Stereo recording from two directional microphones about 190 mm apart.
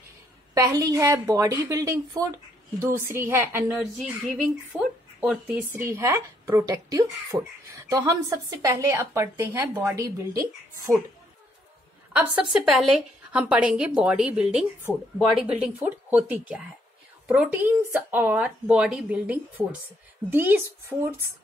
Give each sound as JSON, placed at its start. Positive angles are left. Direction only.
{"t": 0.6, "sound": "speech", "side_deg": -20}
{"t": 12.1, "sound": "a woman's voice", "side_deg": -5}